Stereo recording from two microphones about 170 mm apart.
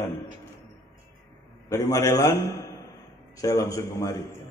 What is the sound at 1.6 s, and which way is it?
A man's voice, 20° left (ahead or behind).